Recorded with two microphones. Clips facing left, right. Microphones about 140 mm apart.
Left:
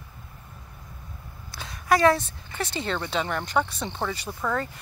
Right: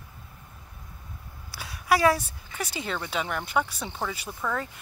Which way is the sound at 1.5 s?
5° right (ahead or behind).